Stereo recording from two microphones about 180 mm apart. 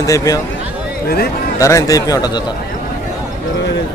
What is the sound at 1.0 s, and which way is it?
Speech, 60° left (ahead or behind).